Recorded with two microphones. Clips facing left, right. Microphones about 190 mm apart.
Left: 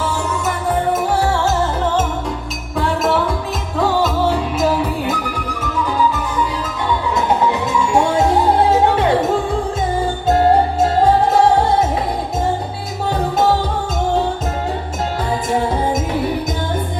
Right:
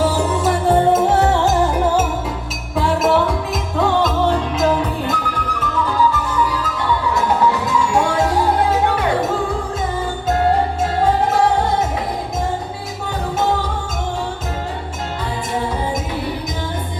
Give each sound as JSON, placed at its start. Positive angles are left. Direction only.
{"t": 0.0, "sound": "music", "side_deg": -35}
{"t": 5.7, "sound": "music", "side_deg": 15}
{"t": 7.3, "sound": "music", "side_deg": 20}